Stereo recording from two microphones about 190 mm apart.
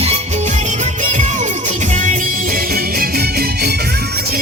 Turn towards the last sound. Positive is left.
turn(degrees=-55)  # may be behind; listen again after turning